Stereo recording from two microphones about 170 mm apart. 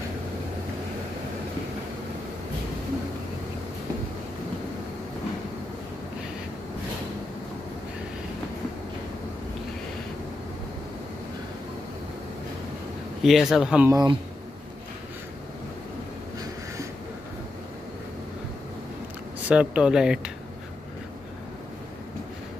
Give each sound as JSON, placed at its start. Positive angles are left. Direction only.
{"t": 13.2, "sound": "speech", "side_deg": 0}
{"t": 13.8, "sound": "speech", "side_deg": -20}
{"t": 19.4, "sound": "speech", "side_deg": -5}